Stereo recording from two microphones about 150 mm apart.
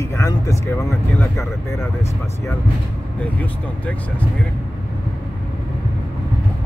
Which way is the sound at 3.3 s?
10° left (ahead or behind).